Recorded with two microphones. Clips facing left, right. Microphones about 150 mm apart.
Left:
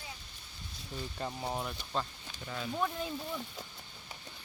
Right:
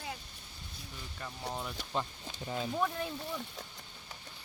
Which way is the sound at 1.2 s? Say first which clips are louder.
Left 3 dB; 30° left (ahead or behind).